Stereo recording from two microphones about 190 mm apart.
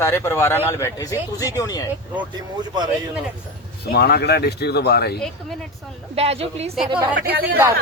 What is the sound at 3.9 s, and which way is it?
Speech, 60° left (ahead or behind).